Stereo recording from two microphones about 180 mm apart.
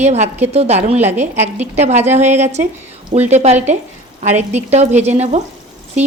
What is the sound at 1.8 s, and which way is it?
A woman's voice, 40° right (ahead or behind).